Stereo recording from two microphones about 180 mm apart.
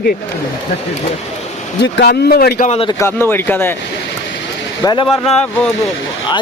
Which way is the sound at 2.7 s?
30° left (ahead or behind).